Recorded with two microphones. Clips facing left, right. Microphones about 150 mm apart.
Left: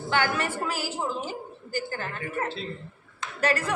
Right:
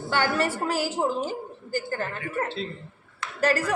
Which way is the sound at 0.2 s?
40° right (ahead or behind).